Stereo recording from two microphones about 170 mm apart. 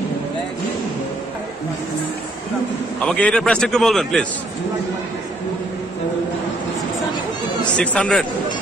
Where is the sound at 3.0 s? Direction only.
5° left (ahead or behind).